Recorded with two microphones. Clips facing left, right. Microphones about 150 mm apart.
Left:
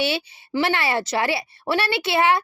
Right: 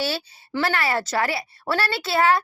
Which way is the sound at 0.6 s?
25° left (ahead or behind).